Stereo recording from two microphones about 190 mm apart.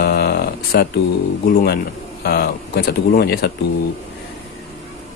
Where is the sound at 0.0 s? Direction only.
55° left (ahead or behind).